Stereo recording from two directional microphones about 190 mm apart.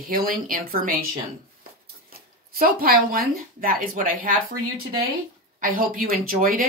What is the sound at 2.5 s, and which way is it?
A woman's voice, 50° right (ahead or behind).